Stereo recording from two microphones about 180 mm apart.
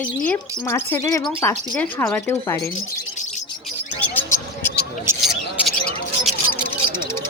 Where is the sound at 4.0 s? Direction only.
10° left (ahead or behind).